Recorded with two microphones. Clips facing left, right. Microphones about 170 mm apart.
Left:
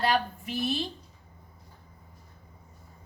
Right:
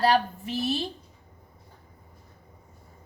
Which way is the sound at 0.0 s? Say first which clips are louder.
Right 4 dB; 35° right (ahead or behind).